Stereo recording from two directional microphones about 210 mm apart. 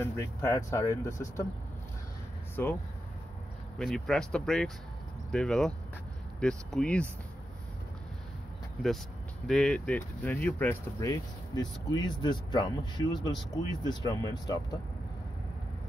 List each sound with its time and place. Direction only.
0.0 s speech: 15° left (ahead or behind)
2.5 s speech: 10° left (ahead or behind)
9.5 s speech: 5° left (ahead or behind)